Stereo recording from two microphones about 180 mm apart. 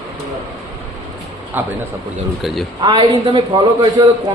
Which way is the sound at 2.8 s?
25° right (ahead or behind).